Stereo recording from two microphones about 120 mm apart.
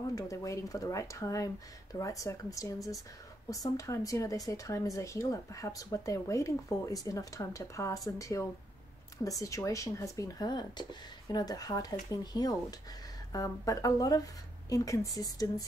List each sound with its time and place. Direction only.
0.1 s speech: 30° left (ahead or behind)